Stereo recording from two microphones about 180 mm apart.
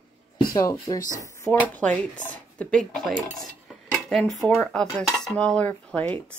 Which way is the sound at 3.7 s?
5° left (ahead or behind).